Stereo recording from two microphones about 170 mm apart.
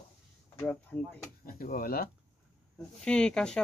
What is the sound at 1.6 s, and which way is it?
Speech, 55° left (ahead or behind).